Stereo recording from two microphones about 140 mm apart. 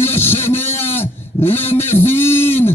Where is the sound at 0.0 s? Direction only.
15° left (ahead or behind).